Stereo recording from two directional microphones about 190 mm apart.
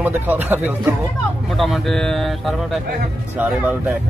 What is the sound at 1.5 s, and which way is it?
Speech, centre (ahead or behind).